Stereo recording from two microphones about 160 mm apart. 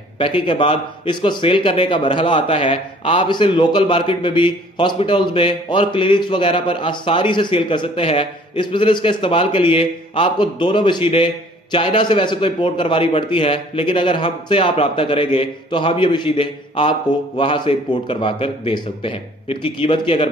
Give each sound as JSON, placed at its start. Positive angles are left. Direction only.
{"t": 0.2, "sound": "speech", "side_deg": 35}